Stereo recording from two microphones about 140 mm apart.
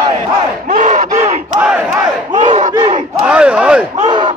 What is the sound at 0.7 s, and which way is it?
Battle cry, 60° right (ahead or behind).